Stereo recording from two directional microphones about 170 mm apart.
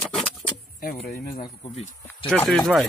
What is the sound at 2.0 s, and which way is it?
Speech, 10° left (ahead or behind).